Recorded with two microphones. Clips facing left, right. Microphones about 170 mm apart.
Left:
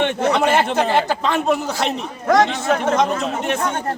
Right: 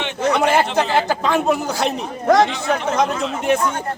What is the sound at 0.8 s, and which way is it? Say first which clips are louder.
A man's voice: even; centre (ahead or behind).